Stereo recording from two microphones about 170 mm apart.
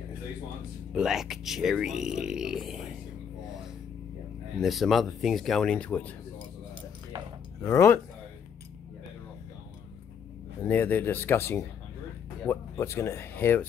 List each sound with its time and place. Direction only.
0.9 s speech: centre (ahead or behind)
4.6 s speech: centre (ahead or behind)
7.6 s speech: 15° left (ahead or behind)
10.7 s speech: 10° left (ahead or behind)